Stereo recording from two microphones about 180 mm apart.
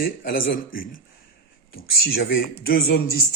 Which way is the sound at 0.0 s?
55° left (ahead or behind).